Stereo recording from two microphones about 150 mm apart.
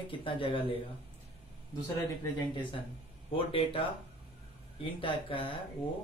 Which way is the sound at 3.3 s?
35° left (ahead or behind).